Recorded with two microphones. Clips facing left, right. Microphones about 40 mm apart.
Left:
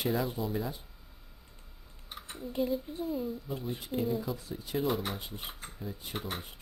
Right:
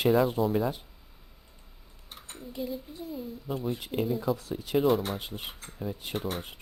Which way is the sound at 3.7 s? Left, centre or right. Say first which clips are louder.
Right 2 dB; right.